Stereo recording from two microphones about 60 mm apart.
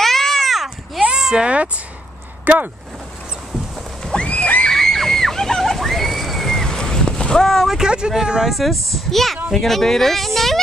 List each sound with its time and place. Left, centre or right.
0.0 s a sound: centre
1.0 s a sound: centre
2.4 s speech: right
4.0 s neigh: centre
4.6 s slosh: centre
7.7 s speech: centre